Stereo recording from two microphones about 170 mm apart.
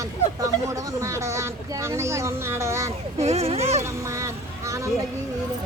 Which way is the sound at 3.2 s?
40° right (ahead or behind).